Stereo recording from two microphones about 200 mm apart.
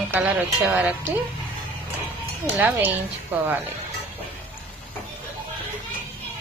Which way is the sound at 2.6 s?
10° right (ahead or behind).